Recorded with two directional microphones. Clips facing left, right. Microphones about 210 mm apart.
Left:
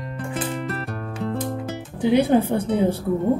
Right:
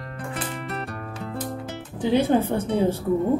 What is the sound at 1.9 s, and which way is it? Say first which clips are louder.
Music: left 3 dB; 15° left (ahead or behind).